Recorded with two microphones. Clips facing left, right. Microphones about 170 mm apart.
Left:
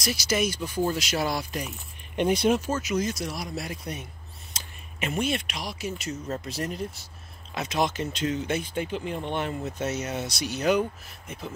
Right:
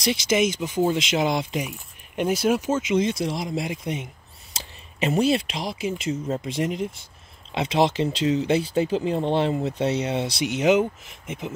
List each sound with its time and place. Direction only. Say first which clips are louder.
0.0 s speech: right 5 dB; 25° right (ahead or behind); by 2.6 s 5° right (ahead or behind)
2.6 s speech: right 5 dB; 25° right (ahead or behind)
5.0 s speech: right 7 dB; 30° right (ahead or behind)
6.2 s speech: right 5 dB; 10° right (ahead or behind)
7.5 s speech: right 6 dB; 30° right (ahead or behind)